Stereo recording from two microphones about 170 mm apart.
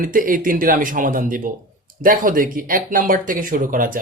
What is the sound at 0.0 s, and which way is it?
Speech, 55° right (ahead or behind).